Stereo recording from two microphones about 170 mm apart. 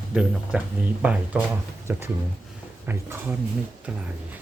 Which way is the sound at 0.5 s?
5° right (ahead or behind).